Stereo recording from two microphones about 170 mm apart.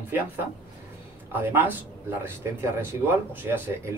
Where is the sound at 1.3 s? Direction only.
10° right (ahead or behind).